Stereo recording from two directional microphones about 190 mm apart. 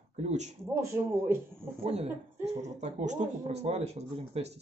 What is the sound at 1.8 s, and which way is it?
Speech, 35° right (ahead or behind).